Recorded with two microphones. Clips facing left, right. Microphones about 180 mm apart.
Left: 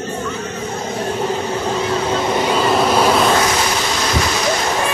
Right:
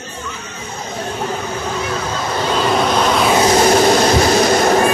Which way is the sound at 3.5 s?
45° right (ahead or behind).